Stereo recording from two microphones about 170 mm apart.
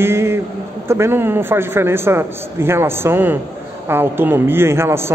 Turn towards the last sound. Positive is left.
turn(degrees=-15)  # may be behind; listen again after turning